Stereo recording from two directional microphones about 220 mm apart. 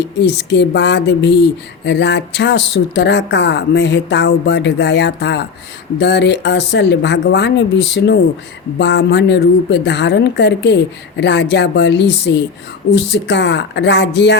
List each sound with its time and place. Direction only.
0.0 s speech: 50° left (ahead or behind)